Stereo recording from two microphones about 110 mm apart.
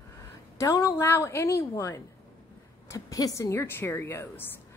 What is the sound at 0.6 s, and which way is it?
A woman's voice, 30° left (ahead or behind).